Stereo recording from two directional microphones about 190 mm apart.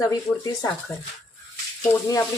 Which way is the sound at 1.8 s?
15° left (ahead or behind).